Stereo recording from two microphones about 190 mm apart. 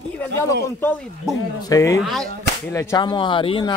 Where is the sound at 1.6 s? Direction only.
15° left (ahead or behind).